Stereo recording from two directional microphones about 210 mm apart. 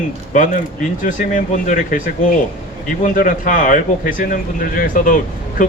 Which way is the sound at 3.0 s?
40° left (ahead or behind).